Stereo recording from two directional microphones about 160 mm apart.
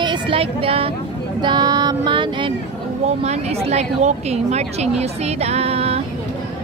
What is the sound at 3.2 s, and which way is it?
A woman's voice, 45° right (ahead or behind).